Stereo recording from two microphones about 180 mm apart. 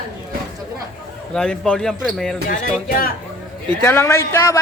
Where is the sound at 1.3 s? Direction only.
5° left (ahead or behind).